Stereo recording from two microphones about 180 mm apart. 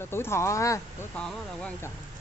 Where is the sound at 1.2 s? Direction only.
5° left (ahead or behind).